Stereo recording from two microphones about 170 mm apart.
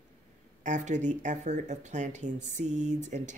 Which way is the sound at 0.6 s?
45° right (ahead or behind).